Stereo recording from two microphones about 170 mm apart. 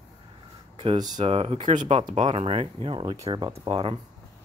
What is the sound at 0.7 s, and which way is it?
Speech, 25° right (ahead or behind).